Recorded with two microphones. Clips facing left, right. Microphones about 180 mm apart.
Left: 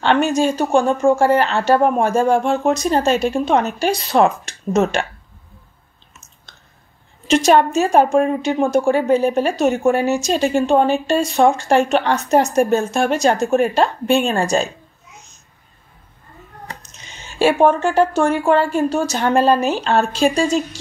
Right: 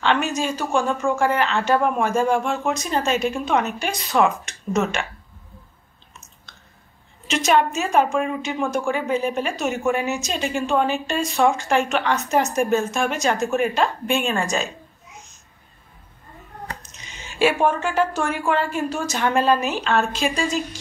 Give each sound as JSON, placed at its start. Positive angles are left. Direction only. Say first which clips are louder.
{"t": 0.0, "sound": "a woman's voice", "louder": "left 6 dB", "side_deg": 35}
{"t": 7.2, "sound": "a woman's voice", "louder": "left 6 dB", "side_deg": 35}
{"t": 17.4, "sound": "a woman's voice", "louder": "left 5 dB", "side_deg": 30}